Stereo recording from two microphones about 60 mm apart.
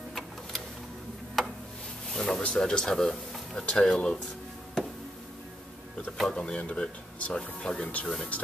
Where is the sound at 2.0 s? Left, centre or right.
Centre.